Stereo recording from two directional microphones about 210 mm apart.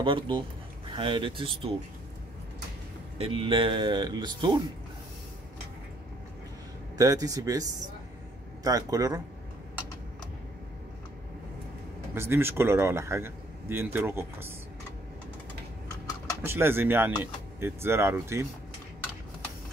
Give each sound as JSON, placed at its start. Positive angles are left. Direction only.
{"t": 0.0, "sound": "speech", "side_deg": -25}
{"t": 3.2, "sound": "speech", "side_deg": -25}
{"t": 7.0, "sound": "speech", "side_deg": -15}
{"t": 12.1, "sound": "speech", "side_deg": -10}
{"t": 16.4, "sound": "speech", "side_deg": -10}